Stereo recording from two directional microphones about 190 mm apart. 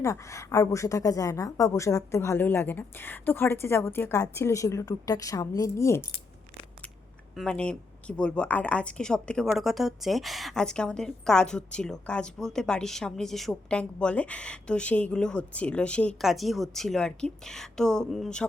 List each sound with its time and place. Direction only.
0.0 s a woman's voice: 15° left (ahead or behind)
7.3 s a woman's voice: 5° left (ahead or behind)